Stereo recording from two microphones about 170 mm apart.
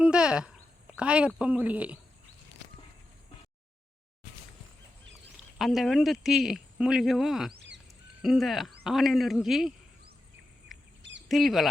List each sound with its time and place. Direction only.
0.0 s speech: 5° right (ahead or behind)
5.5 s speech: centre (ahead or behind)
7.5 s a sound: 90° right
8.2 s speech: centre (ahead or behind)
10.7 s bird: centre (ahead or behind)
11.3 s speech: centre (ahead or behind)